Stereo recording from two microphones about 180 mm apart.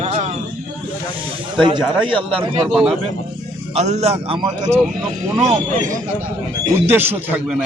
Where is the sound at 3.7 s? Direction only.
40° right (ahead or behind); by 4.7 s 20° right (ahead or behind).